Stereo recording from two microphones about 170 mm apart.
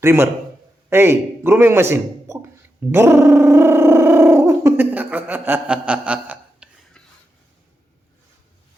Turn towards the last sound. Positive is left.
turn(degrees=5)  # may be behind; listen again after turning